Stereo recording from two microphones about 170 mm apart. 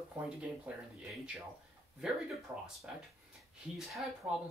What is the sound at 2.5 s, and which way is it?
Speech, 20° right (ahead or behind).